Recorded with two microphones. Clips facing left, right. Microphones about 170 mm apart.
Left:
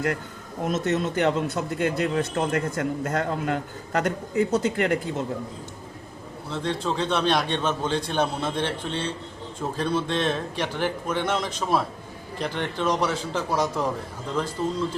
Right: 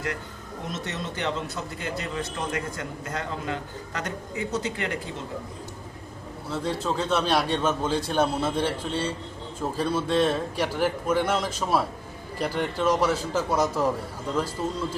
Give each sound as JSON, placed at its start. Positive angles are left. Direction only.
{"t": 0.7, "sound": "a man's voice", "side_deg": 50}
{"t": 6.5, "sound": "a man's voice", "side_deg": -5}